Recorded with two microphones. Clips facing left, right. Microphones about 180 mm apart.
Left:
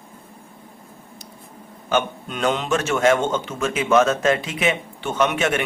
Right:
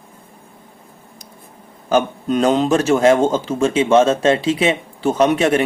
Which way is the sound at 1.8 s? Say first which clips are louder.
Right 6 dB; 35° right (ahead or behind).